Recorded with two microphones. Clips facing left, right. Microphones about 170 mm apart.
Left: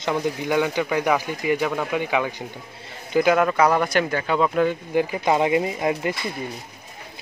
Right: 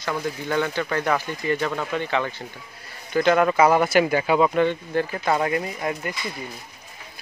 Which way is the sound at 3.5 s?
5° right (ahead or behind).